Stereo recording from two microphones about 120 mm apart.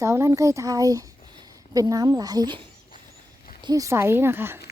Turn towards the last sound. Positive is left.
turn(degrees=-20)  # may be behind; listen again after turning